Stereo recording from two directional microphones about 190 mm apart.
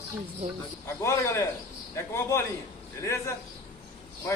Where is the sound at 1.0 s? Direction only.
15° left (ahead or behind).